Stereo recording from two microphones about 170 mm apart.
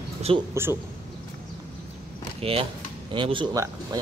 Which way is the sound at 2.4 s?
35° right (ahead or behind).